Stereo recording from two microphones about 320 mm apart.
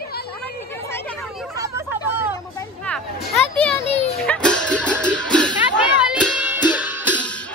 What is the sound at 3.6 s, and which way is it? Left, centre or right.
Children playing, centre.